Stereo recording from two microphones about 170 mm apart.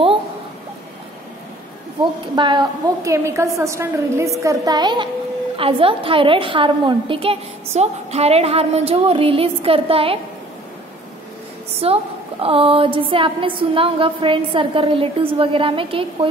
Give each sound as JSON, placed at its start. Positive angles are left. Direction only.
{"t": 2.3, "sound": "a woman's voice", "side_deg": -25}
{"t": 11.8, "sound": "a woman's voice", "side_deg": -35}